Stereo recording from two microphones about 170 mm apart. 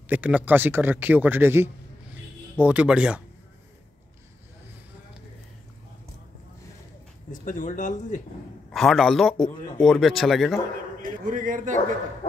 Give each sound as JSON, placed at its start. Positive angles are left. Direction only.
{"t": 0.0, "sound": "speech", "side_deg": -10}
{"t": 7.4, "sound": "speech", "side_deg": 50}
{"t": 8.7, "sound": "speech", "side_deg": 0}
{"t": 11.0, "sound": "a man's voice", "side_deg": -50}